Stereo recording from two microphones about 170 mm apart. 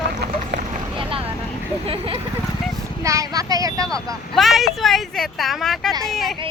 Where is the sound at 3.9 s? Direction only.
Centre (ahead or behind).